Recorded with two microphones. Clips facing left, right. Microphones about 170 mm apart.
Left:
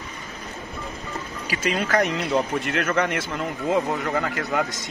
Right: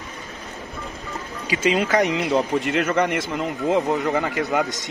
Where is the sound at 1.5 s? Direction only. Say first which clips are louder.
Right 4 dB; 20° right (ahead or behind).